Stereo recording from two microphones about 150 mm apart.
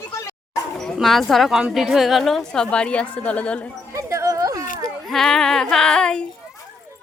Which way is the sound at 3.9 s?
20° right (ahead or behind).